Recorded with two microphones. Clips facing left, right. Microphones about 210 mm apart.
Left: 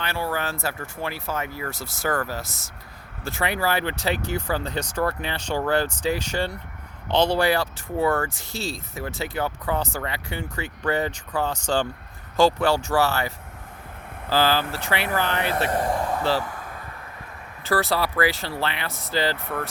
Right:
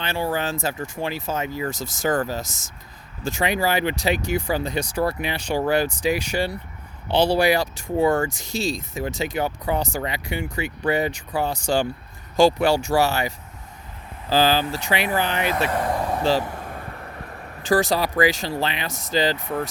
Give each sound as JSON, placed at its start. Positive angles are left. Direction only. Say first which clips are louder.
{"t": 0.0, "sound": "speech", "louder": "right 3 dB", "side_deg": -20}
{"t": 16.0, "sound": "vehicle", "louder": "right 3 dB", "side_deg": -15}
{"t": 16.4, "sound": "vehicle", "louder": "right 3 dB", "side_deg": -40}
{"t": 17.6, "sound": "speech", "louder": "right 3 dB", "side_deg": -15}